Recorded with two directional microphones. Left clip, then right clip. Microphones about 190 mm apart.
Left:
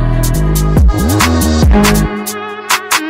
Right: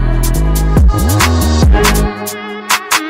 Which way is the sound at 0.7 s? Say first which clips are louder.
Left 1 dB; centre (ahead or behind).